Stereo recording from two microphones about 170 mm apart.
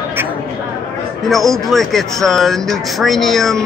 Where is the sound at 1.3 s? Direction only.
Centre (ahead or behind).